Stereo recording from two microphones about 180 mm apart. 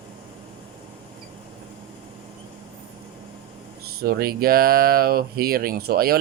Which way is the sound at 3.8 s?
60° right (ahead or behind).